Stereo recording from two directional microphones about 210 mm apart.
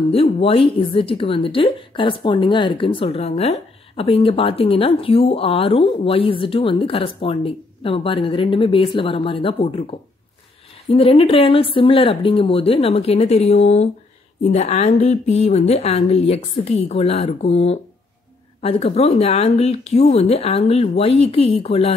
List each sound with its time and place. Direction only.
0.1 s a woman's voice: 25° left (ahead or behind)